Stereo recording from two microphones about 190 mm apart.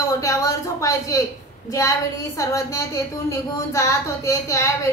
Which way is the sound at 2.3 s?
15° left (ahead or behind).